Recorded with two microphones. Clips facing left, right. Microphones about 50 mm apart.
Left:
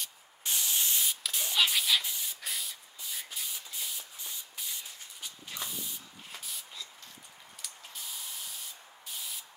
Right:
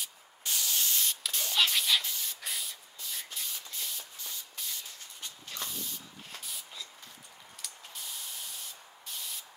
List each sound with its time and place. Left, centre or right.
0.4 s spray: left
1.0 s spray: centre
3.0 s rub: centre
7.6 s spray: centre